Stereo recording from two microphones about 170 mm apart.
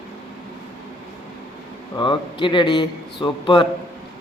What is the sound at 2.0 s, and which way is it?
A man's voice, 30° left (ahead or behind).